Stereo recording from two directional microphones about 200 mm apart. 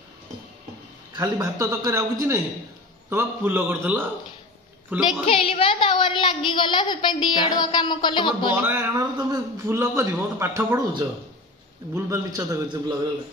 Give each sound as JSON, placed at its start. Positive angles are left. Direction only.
{"t": 1.1, "sound": "a man's voice", "side_deg": -15}
{"t": 5.0, "sound": "a woman's voice", "side_deg": 30}
{"t": 8.5, "sound": "a man's voice", "side_deg": -10}